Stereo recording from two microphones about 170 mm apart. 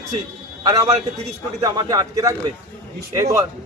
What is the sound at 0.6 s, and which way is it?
A man's voice, 20° right (ahead or behind).